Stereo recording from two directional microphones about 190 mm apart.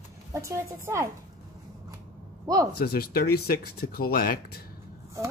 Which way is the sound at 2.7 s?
50° left (ahead or behind).